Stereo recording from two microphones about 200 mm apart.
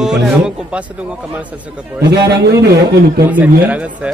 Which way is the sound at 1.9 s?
55° right (ahead or behind).